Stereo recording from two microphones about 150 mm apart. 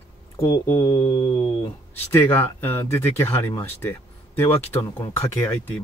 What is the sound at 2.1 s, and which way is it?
Speech, 15° left (ahead or behind).